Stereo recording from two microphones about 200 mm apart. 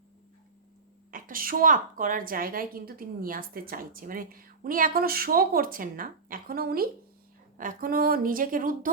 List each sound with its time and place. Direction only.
1.1 s a woman's voice: 45° right (ahead or behind)